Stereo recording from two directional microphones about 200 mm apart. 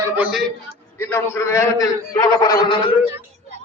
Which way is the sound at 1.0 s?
10° left (ahead or behind).